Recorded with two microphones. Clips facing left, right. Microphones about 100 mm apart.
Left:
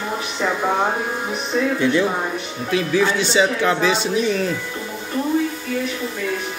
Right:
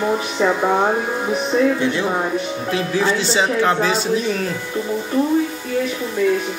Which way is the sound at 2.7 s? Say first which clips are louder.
Left 2 dB; 30° right (ahead or behind).